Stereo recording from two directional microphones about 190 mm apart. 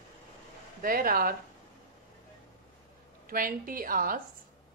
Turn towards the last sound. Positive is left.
turn(degrees=-50)  # may be behind; listen again after turning